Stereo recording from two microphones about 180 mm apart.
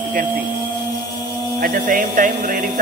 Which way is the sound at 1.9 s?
50° right (ahead or behind).